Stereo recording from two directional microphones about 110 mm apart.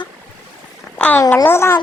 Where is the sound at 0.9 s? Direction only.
10° left (ahead or behind).